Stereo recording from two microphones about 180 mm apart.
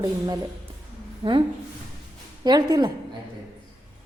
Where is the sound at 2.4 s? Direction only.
25° right (ahead or behind).